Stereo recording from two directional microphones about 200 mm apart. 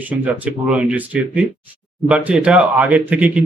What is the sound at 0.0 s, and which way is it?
Speech, 10° right (ahead or behind).